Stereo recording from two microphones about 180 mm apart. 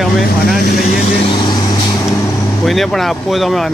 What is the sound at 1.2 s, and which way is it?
Speech, 25° left (ahead or behind).